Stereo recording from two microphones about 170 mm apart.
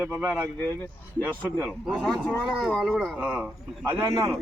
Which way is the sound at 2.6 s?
Centre (ahead or behind).